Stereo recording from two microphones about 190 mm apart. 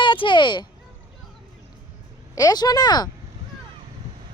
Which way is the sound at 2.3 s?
20° left (ahead or behind).